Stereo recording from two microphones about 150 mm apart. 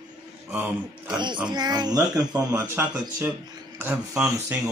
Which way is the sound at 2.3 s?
10° right (ahead or behind).